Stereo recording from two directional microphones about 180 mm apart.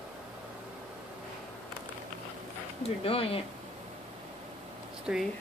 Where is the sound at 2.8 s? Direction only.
30° left (ahead or behind).